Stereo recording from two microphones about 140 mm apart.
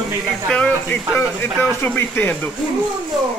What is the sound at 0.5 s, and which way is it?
Speech, 10° left (ahead or behind).